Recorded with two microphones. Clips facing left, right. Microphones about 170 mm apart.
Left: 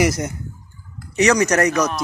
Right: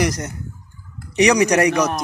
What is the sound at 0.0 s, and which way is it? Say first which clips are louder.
Speech: left 2 dB; 10° left (ahead or behind).